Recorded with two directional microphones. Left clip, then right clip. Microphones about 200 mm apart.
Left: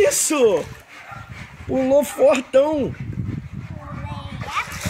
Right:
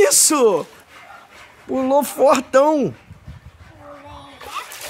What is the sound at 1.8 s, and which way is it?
Speech, 10° right (ahead or behind).